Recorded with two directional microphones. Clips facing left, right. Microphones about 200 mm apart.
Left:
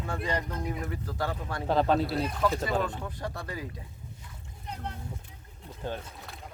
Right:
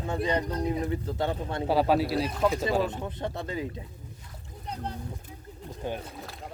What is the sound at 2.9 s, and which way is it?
Speech, 20° right (ahead or behind).